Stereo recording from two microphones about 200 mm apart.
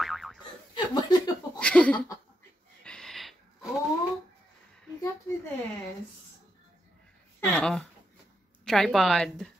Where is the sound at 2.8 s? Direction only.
5° left (ahead or behind).